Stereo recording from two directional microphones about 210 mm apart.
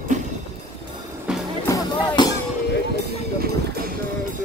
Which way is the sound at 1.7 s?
15° left (ahead or behind).